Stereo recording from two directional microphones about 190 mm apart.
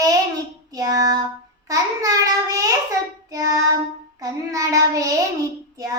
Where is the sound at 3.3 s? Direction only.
20° right (ahead or behind).